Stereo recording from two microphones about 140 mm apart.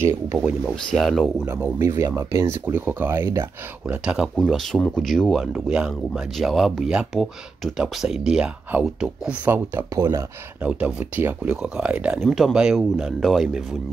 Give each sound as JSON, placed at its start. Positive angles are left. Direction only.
{"t": 0.9, "sound": "speech", "side_deg": 5}
{"t": 1.4, "sound": "speech", "side_deg": -15}
{"t": 3.8, "sound": "speech", "side_deg": -10}
{"t": 4.4, "sound": "speech", "side_deg": 5}